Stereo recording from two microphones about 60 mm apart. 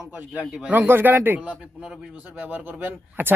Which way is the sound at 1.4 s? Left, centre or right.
Centre.